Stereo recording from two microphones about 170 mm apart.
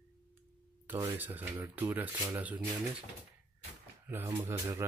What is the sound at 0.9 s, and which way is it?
Speech, 10° right (ahead or behind).